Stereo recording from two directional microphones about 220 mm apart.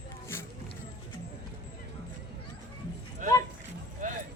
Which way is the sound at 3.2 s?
35° right (ahead or behind).